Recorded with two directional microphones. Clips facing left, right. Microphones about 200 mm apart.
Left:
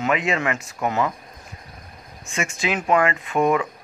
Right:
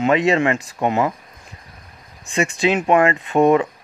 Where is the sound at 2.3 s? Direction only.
30° right (ahead or behind).